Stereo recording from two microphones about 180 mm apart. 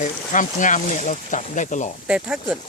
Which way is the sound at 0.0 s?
45° left (ahead or behind).